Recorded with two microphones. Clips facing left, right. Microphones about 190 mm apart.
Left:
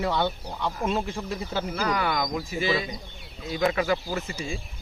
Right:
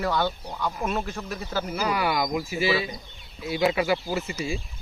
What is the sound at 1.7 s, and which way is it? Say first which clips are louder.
Speech: right 2 dB; 10° right (ahead or behind).